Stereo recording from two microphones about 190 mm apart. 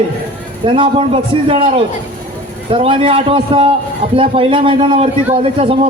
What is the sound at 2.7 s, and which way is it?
A man's voice, 30° right (ahead or behind).